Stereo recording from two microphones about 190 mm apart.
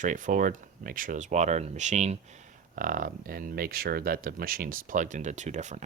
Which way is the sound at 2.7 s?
45° right (ahead or behind).